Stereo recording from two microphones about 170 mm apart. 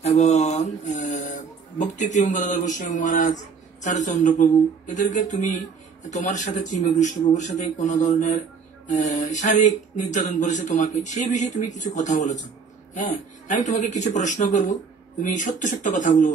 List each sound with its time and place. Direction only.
0.0 s speech: 40° left (ahead or behind)